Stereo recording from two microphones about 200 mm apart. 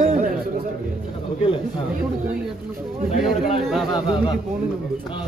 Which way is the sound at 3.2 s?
Centre (ahead or behind).